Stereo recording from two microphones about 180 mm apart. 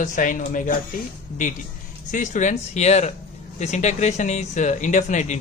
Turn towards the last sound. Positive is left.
turn(degrees=40)  # may be behind; listen again after turning